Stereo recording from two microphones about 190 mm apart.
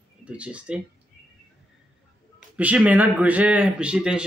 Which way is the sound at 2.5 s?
5° right (ahead or behind).